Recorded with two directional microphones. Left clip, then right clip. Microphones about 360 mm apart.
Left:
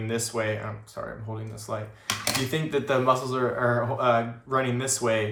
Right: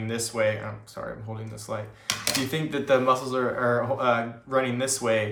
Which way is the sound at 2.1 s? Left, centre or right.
Centre.